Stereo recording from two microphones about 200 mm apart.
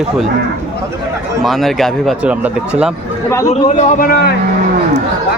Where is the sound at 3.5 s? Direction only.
35° left (ahead or behind).